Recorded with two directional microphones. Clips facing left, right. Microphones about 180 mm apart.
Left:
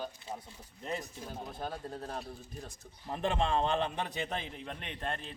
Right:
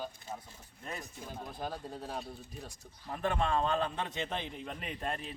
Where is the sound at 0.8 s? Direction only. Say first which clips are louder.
Left 5 dB; 20° left (ahead or behind).